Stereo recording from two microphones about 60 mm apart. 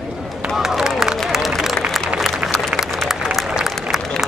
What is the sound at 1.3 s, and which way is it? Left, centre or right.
Applause, centre.